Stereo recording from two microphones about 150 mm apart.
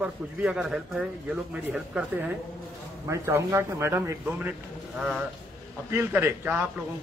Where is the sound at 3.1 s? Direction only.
20° right (ahead or behind); by 5.2 s centre (ahead or behind).